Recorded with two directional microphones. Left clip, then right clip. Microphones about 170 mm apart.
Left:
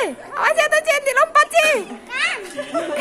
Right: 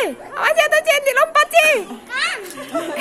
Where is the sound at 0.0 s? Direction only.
10° right (ahead or behind).